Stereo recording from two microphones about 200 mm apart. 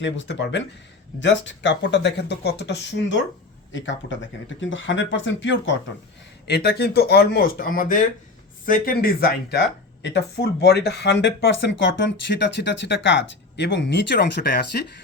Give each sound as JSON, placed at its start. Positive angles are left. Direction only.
{"t": 0.0, "sound": "speech", "side_deg": 65}
{"t": 3.7, "sound": "speech", "side_deg": 65}
{"t": 6.5, "sound": "speech", "side_deg": 55}